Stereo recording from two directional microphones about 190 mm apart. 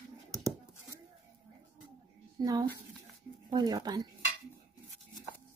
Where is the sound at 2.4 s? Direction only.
20° right (ahead or behind).